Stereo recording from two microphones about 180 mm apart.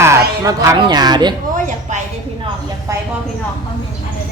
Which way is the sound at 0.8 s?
25° right (ahead or behind).